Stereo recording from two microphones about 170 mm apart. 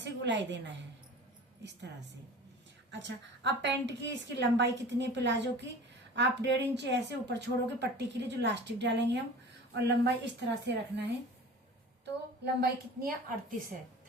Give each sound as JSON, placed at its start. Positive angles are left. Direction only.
{"t": 0.0, "sound": "a woman's voice", "side_deg": -90}
{"t": 2.9, "sound": "speech", "side_deg": -90}
{"t": 12.5, "sound": "a woman's voice", "side_deg": -65}